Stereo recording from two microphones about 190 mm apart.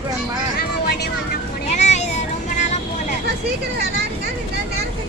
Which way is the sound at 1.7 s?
35° left (ahead or behind).